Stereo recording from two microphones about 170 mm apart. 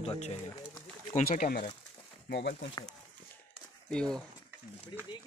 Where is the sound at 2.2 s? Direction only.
85° left.